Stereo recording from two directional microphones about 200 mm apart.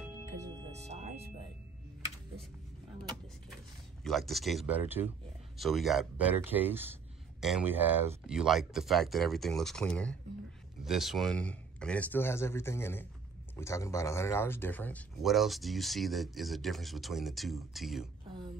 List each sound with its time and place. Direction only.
0.7 s music: 35° right (ahead or behind)
4.0 s speech: centre (ahead or behind)